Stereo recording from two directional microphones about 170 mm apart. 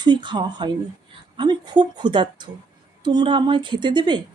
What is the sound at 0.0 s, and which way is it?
A woman's voice, 25° right (ahead or behind).